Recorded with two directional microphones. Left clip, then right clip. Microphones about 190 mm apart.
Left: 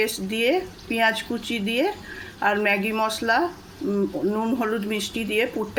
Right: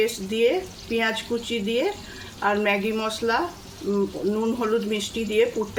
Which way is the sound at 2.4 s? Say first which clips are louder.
Left 1 dB; 40° left (ahead or behind).